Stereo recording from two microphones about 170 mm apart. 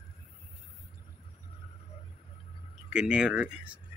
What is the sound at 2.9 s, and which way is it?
Speech, 5° right (ahead or behind).